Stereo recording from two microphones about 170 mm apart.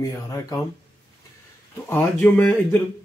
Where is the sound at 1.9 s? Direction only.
10° left (ahead or behind).